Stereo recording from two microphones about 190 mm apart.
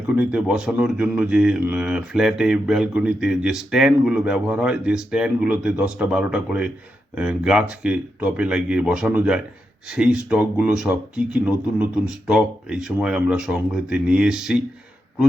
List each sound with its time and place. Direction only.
0.1 s speech: 5° right (ahead or behind)